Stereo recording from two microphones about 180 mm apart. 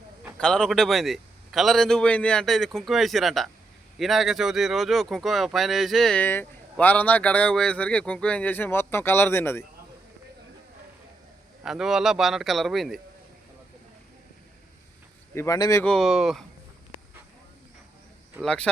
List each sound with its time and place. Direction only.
0.3 s a man's voice: 5° left (ahead or behind)
11.6 s a man's voice: centre (ahead or behind)
15.4 s speech: 20° left (ahead or behind)
15.8 s a man's voice: 5° left (ahead or behind)
18.4 s a man's voice: 5° left (ahead or behind)